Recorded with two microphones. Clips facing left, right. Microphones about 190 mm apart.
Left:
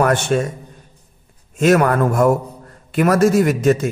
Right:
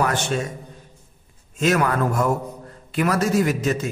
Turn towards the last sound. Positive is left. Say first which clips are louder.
# left 6 dB
turn(degrees=50)  # may be behind; listen again after turning